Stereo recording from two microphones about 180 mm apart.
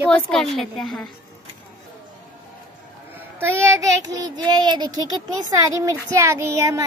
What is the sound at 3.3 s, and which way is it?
Child singing, 15° right (ahead or behind).